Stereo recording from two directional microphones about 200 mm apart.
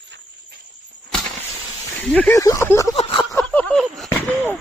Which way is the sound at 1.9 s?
5° left (ahead or behind).